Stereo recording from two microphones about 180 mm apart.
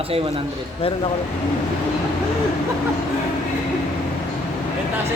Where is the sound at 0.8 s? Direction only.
30° left (ahead or behind).